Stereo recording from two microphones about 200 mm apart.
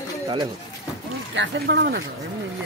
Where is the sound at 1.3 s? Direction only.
60° right (ahead or behind).